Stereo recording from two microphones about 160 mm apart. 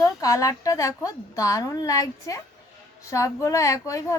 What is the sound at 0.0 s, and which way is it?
A woman's voice, 20° left (ahead or behind).